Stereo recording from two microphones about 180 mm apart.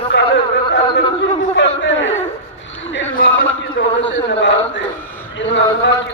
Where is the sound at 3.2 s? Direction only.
90° left.